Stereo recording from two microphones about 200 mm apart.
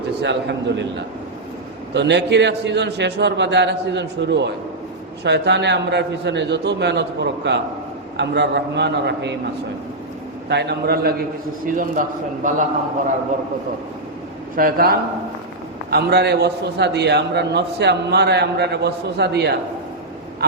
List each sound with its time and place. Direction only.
0.2 s a man's voice: 60° right (ahead or behind)
1.9 s a man's voice: 60° right (ahead or behind)
10.5 s a man's voice: 55° right (ahead or behind); by 12.6 s 40° right (ahead or behind)
14.5 s a man's voice: 45° right (ahead or behind)